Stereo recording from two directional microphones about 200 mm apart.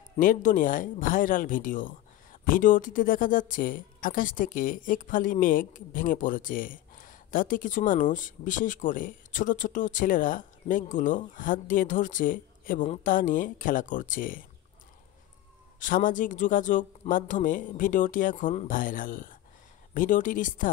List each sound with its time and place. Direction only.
0.2 s speech: 40° left (ahead or behind)
15.8 s speech: 40° left (ahead or behind)